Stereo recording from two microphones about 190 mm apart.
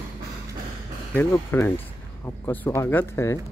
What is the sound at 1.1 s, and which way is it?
Speech, 10° left (ahead or behind).